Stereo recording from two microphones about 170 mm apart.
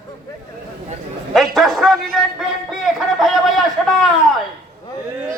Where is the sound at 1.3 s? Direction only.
Centre (ahead or behind).